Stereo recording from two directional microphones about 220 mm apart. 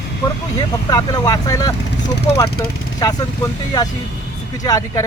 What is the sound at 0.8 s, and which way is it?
Speech, 15° left (ahead or behind).